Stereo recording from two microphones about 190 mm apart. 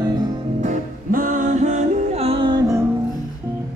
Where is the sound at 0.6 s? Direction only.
40° right (ahead or behind); by 2.8 s 25° right (ahead or behind).